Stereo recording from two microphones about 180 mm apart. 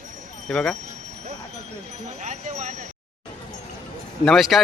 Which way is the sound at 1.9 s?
40° right (ahead or behind).